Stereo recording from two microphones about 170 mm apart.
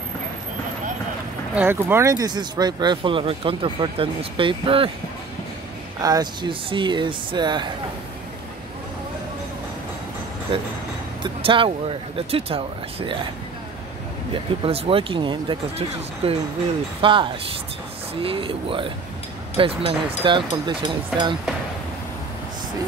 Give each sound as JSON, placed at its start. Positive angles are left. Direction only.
{"t": 1.5, "sound": "speech", "side_deg": -10}
{"t": 5.9, "sound": "speech", "side_deg": -20}
{"t": 11.2, "sound": "speech", "side_deg": -30}
{"t": 14.3, "sound": "speech", "side_deg": -35}